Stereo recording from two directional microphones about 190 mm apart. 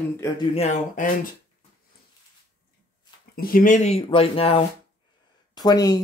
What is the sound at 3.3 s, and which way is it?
Speech, 50° left (ahead or behind).